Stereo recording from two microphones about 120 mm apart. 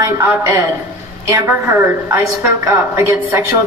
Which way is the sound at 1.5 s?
15° right (ahead or behind).